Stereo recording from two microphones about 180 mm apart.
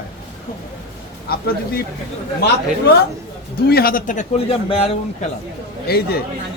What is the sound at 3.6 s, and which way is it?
A man's voice, 55° left (ahead or behind).